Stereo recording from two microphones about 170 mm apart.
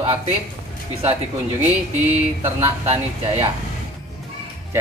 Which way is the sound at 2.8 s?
40° right (ahead or behind).